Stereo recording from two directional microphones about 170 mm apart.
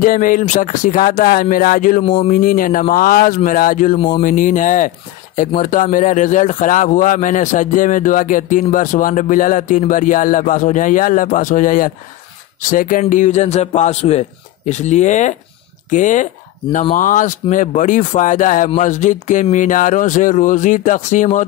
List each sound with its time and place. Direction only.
0.0 s a man's voice: 50° left (ahead or behind)
2.0 s speech: 30° left (ahead or behind)
2.3 s a man's voice: 55° left (ahead or behind)